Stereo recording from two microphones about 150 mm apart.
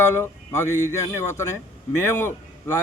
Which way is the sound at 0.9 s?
20° left (ahead or behind).